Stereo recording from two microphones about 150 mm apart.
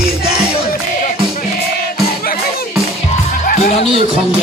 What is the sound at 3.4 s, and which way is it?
Music, 70° left (ahead or behind).